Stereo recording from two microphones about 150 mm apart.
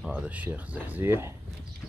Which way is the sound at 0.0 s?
10° right (ahead or behind).